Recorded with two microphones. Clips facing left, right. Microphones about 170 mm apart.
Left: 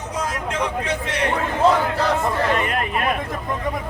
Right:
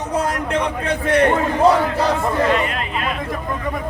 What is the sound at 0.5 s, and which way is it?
Speech, 55° right (ahead or behind).